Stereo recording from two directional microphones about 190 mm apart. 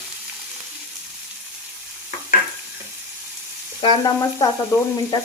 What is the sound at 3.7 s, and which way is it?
Frying, 20° left (ahead or behind).